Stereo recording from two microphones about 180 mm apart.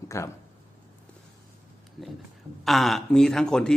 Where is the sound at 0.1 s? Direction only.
15° left (ahead or behind).